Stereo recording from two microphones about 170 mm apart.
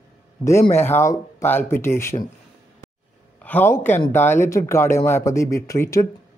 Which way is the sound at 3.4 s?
10° left (ahead or behind).